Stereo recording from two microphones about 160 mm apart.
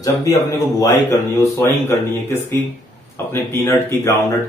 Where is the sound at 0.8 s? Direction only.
15° left (ahead or behind).